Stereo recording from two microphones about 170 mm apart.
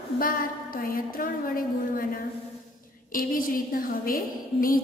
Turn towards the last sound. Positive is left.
turn(degrees=55)  # may be behind; listen again after turning